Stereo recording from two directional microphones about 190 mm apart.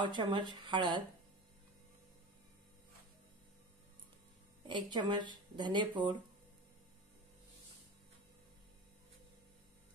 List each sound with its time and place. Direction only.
0.0 s speech: 25° right (ahead or behind)
4.6 s speech: 25° right (ahead or behind)